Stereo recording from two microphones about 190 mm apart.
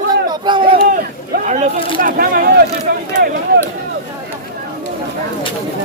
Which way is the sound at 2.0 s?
50° right (ahead or behind).